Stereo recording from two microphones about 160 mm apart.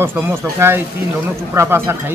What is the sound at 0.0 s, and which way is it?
A man's voice, 15° right (ahead or behind).